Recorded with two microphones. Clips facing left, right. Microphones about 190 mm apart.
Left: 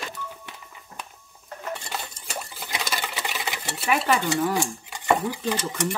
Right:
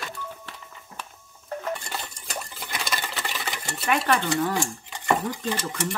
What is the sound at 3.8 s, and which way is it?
Stir, 5° left (ahead or behind).